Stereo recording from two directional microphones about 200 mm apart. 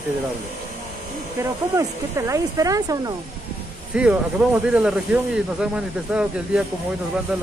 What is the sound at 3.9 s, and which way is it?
Speech, 5° right (ahead or behind).